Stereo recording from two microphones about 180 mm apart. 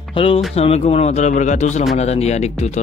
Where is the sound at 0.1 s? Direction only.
30° left (ahead or behind).